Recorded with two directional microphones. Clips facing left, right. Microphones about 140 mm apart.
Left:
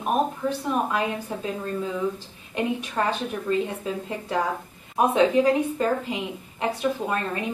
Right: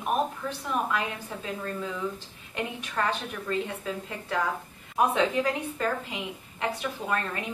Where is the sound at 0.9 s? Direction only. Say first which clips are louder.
Left 5 dB; 25° left (ahead or behind).